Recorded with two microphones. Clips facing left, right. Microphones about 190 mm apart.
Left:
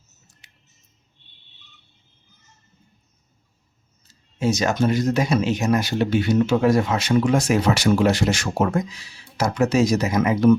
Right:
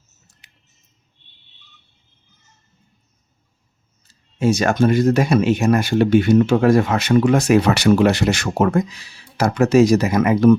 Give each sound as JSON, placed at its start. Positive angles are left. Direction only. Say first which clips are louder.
{"t": 4.4, "sound": "speech", "louder": "right 4 dB", "side_deg": -55}